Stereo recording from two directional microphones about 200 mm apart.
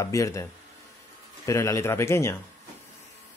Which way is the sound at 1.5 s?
15° left (ahead or behind).